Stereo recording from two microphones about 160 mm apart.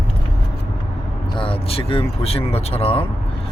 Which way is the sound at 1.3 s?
35° left (ahead or behind).